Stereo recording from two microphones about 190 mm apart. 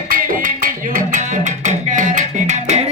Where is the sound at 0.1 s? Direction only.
45° right (ahead or behind).